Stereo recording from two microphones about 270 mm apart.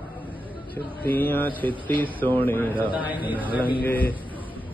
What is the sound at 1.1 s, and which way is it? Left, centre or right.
A man's voice, centre.